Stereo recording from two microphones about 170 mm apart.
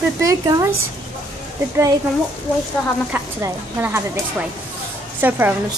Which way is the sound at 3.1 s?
10° right (ahead or behind).